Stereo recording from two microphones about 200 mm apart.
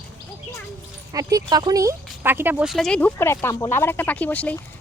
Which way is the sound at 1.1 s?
15° right (ahead or behind).